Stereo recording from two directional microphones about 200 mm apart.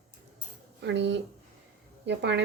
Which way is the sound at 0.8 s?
60° right (ahead or behind).